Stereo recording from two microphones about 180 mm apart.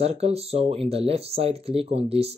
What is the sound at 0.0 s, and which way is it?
Speech, 35° right (ahead or behind).